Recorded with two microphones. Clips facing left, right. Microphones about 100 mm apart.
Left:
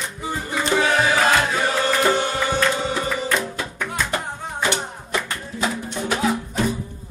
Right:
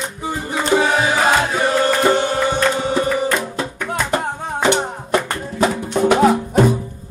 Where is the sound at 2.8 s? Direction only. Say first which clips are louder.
Right 6 dB; 5° right (ahead or behind).